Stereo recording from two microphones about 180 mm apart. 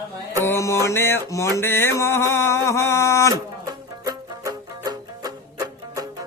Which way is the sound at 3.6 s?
20° right (ahead or behind).